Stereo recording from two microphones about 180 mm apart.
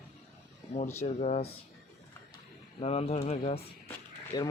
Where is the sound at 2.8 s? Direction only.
35° left (ahead or behind).